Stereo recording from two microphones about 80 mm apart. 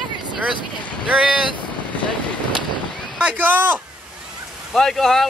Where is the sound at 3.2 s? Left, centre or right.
Centre.